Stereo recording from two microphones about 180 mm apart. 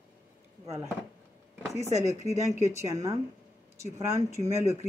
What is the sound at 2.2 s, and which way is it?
Speech, 15° left (ahead or behind).